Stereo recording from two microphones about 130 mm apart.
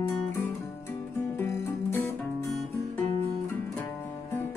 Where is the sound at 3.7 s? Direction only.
20° left (ahead or behind).